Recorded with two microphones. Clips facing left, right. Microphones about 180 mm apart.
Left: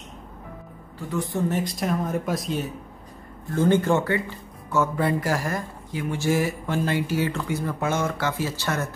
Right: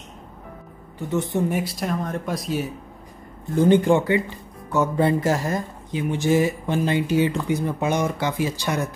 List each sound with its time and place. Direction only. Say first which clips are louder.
0.9 s speech: right 4 dB; 20° right (ahead or behind)
1.5 s speech: even; 5° right (ahead or behind)
3.5 s speech: right 4 dB; 15° right (ahead or behind)